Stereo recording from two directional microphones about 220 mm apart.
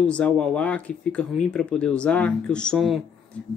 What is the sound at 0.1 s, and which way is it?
Speech, 5° left (ahead or behind).